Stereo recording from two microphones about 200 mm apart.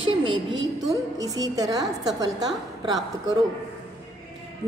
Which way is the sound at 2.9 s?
20° right (ahead or behind).